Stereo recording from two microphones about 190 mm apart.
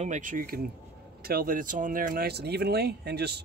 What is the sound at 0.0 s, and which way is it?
Speech, 40° right (ahead or behind).